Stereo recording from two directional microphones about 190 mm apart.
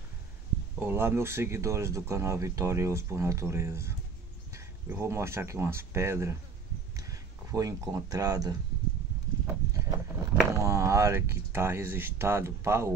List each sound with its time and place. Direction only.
0.7 s speech: 10° right (ahead or behind)